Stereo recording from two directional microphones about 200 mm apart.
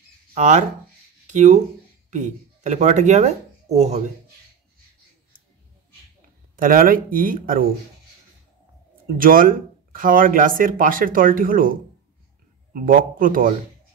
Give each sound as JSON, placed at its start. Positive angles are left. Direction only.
{"t": 0.3, "sound": "speech", "side_deg": -35}
{"t": 6.5, "sound": "speech", "side_deg": -45}
{"t": 9.0, "sound": "speech", "side_deg": -45}